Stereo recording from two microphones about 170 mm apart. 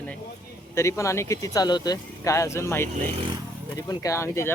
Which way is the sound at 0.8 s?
15° left (ahead or behind).